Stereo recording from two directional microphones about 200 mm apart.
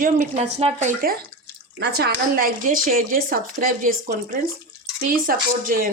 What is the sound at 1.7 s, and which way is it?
A woman's voice, 55° right (ahead or behind).